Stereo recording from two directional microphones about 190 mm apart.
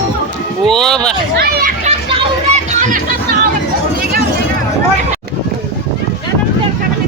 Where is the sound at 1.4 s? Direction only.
55° right (ahead or behind).